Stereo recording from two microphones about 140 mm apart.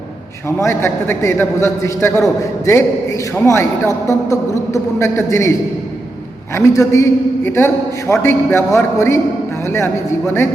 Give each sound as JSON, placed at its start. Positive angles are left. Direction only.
{"t": 0.4, "sound": "a man's voice", "side_deg": 20}
{"t": 6.5, "sound": "a man's voice", "side_deg": 20}